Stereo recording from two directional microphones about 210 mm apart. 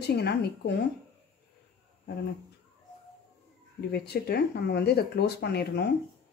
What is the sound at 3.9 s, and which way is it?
Speech, 50° left (ahead or behind).